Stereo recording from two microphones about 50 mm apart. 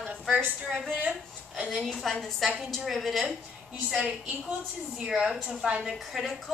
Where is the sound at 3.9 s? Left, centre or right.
Right.